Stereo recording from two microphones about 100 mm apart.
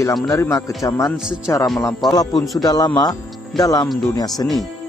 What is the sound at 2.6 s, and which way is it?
Speech, 40° left (ahead or behind).